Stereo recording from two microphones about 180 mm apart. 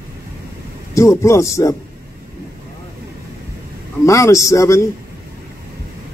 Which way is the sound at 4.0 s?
15° left (ahead or behind).